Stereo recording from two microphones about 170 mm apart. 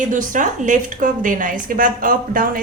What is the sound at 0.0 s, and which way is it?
A woman's voice, 50° right (ahead or behind).